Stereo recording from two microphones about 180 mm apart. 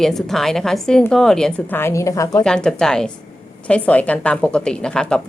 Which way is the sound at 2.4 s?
5° left (ahead or behind).